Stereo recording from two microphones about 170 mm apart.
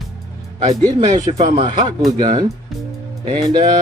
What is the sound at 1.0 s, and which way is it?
Speech, 25° right (ahead or behind).